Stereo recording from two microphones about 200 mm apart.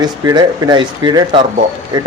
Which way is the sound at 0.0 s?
20° right (ahead or behind).